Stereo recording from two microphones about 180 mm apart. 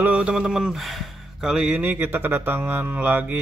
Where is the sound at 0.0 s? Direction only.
5° right (ahead or behind).